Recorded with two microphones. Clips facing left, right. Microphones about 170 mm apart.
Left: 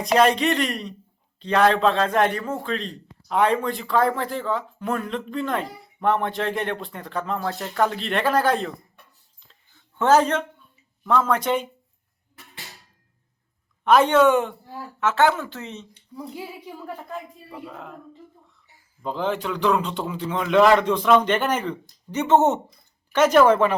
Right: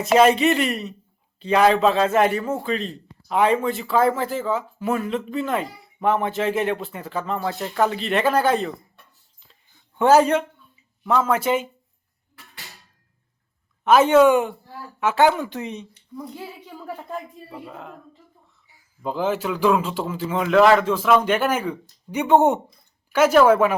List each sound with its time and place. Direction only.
0.0 s speech: 5° right (ahead or behind)
9.5 s a sound: 10° right (ahead or behind)
11.0 s speech: 5° right (ahead or behind)
13.8 s speech: 5° right (ahead or behind)
16.1 s a child's voice: 10° left (ahead or behind)
17.5 s speech: centre (ahead or behind)
19.0 s speech: 5° right (ahead or behind)